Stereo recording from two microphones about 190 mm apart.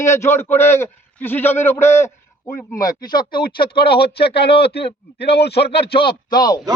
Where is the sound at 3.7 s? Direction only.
55° left (ahead or behind).